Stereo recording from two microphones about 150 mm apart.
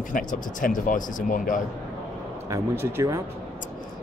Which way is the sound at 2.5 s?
20° right (ahead or behind).